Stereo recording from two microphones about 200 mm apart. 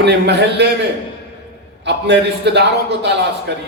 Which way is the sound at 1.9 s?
60° right (ahead or behind).